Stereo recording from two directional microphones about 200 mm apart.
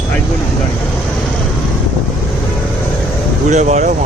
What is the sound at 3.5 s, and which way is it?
Speech, 35° right (ahead or behind).